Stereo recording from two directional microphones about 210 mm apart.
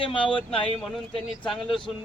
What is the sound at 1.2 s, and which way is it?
Speech, centre (ahead or behind).